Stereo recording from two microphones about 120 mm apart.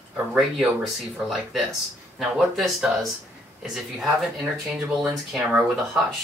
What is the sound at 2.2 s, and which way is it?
Speech, centre (ahead or behind).